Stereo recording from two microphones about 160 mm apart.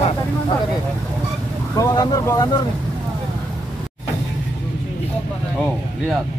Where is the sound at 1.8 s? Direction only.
20° left (ahead or behind).